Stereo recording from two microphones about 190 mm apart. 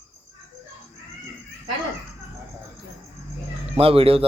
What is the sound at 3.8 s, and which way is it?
Speech, 30° right (ahead or behind).